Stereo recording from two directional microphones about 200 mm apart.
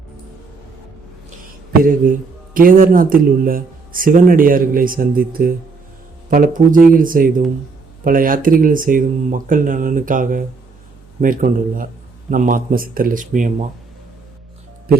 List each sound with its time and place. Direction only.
1.5 s a man's voice: 45° right (ahead or behind)